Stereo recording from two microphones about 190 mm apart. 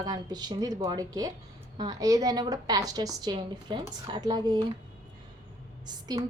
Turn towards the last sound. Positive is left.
turn(degrees=-20)  # may be behind; listen again after turning